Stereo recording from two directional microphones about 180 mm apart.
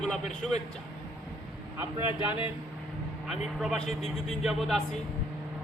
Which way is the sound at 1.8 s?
10° right (ahead or behind).